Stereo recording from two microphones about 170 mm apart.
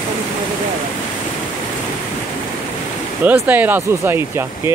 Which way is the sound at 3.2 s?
10° right (ahead or behind).